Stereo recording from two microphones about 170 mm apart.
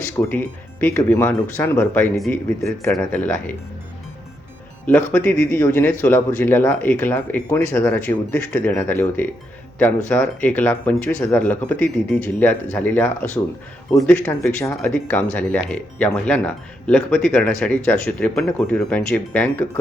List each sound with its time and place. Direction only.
0.2 s speech: 10° left (ahead or behind)
4.9 s speech: 10° left (ahead or behind)